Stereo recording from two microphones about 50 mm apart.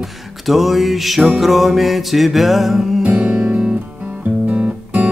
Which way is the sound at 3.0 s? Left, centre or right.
Right.